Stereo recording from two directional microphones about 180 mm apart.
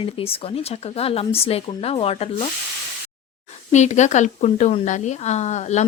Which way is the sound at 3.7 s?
40° left (ahead or behind).